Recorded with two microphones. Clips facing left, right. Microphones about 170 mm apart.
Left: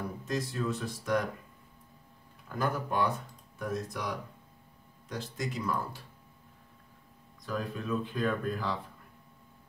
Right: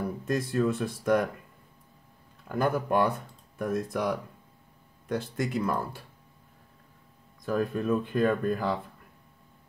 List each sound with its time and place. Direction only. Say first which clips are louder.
0.2 s speech: right 7 dB; 55° right (ahead or behind)
2.4 s speech: right 5 dB; 55° right (ahead or behind)
7.4 s speech: right 8 dB; 55° right (ahead or behind)